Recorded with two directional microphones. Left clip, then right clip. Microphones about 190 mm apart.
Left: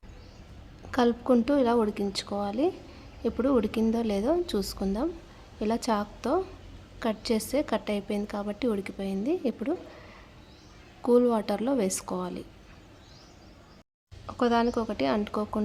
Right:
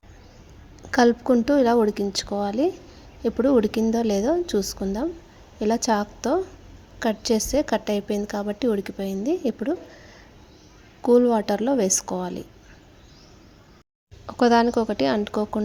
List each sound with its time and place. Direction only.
0.9 s a woman's voice: 15° right (ahead or behind)
11.0 s a woman's voice: 15° right (ahead or behind)
14.3 s a woman's voice: 20° right (ahead or behind)